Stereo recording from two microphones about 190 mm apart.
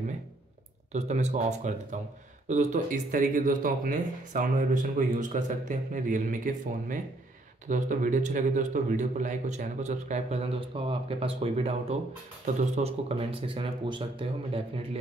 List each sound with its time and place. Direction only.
0.9 s a man's voice: 35° right (ahead or behind)